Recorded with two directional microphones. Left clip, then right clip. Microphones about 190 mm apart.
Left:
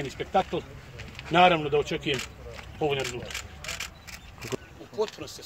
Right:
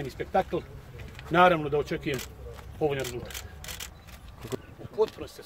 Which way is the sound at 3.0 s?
55° right (ahead or behind).